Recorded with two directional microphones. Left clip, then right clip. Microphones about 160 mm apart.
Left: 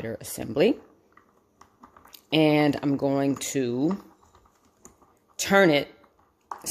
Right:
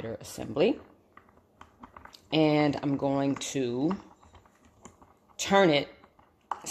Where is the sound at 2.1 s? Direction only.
55° left (ahead or behind).